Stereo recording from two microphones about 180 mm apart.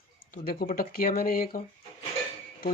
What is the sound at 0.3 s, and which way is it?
Speech, 55° left (ahead or behind).